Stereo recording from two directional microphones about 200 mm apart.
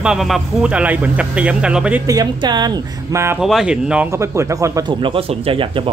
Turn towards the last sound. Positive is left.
turn(degrees=-25)  # may be behind; listen again after turning